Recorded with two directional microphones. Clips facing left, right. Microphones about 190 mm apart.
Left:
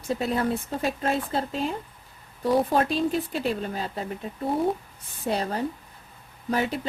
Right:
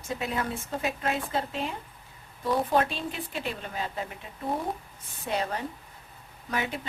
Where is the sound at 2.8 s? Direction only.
40° left (ahead or behind).